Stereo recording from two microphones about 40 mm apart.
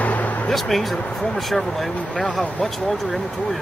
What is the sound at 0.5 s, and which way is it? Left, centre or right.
Speech, centre.